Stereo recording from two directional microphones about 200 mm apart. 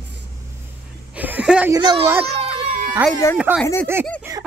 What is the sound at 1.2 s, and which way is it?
Speech, 5° right (ahead or behind).